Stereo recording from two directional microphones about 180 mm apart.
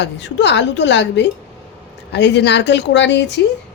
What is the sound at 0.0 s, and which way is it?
A woman's voice, 75° left (ahead or behind).